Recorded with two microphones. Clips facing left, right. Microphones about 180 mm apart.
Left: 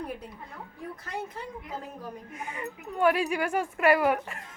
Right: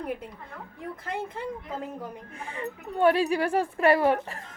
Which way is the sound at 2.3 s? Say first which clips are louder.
Right 2 dB; 30° right (ahead or behind).